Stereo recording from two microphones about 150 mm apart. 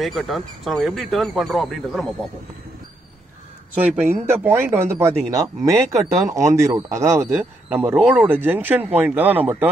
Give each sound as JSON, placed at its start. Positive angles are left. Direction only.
{"t": 0.0, "sound": "speech", "side_deg": 0}
{"t": 3.7, "sound": "speech", "side_deg": -10}